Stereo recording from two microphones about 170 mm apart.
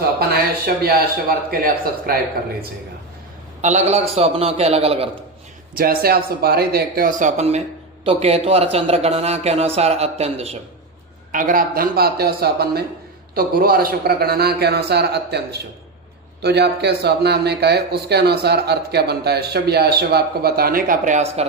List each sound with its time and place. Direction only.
0.8 s a man's voice: 65° right (ahead or behind)
3.6 s a man's voice: 45° right (ahead or behind)
5.7 s a man's voice: 60° right (ahead or behind); by 10.6 s 35° right (ahead or behind)
11.3 s a man's voice: 50° right (ahead or behind); by 15.4 s 75° right (ahead or behind)
16.4 s speech: 75° right (ahead or behind); by 21.4 s 45° right (ahead or behind)